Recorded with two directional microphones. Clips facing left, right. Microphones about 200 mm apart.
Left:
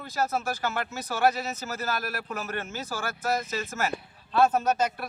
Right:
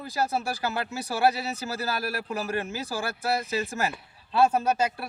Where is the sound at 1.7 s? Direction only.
35° right (ahead or behind).